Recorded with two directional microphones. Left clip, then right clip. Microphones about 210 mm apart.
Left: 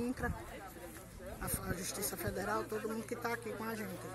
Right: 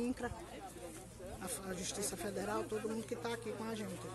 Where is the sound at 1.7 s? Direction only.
20° right (ahead or behind).